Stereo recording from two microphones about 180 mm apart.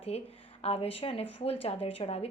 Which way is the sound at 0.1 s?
35° left (ahead or behind).